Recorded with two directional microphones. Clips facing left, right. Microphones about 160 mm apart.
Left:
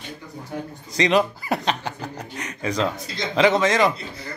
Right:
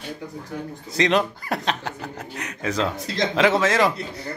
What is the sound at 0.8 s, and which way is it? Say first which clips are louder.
Speech: left 1 dB; centre (ahead or behind).